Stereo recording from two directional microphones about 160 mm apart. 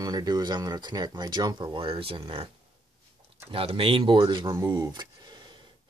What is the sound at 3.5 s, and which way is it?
Speech, 35° right (ahead or behind).